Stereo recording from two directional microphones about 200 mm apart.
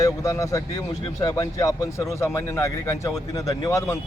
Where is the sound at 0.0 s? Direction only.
15° left (ahead or behind).